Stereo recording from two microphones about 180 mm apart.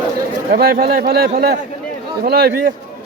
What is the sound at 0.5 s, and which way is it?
A man's voice, 60° right (ahead or behind).